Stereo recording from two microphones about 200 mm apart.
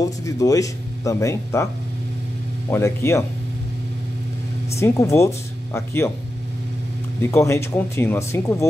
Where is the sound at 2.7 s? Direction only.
15° left (ahead or behind).